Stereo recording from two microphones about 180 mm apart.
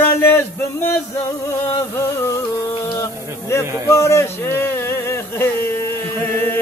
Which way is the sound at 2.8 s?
15° left (ahead or behind).